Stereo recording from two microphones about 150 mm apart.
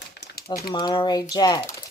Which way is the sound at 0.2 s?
90° left.